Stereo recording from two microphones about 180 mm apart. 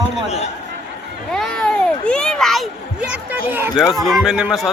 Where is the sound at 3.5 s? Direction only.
10° right (ahead or behind).